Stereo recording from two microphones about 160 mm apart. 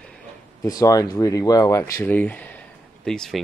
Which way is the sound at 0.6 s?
20° left (ahead or behind).